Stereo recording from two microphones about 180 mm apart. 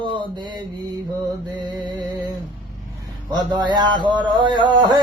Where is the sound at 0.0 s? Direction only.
25° right (ahead or behind).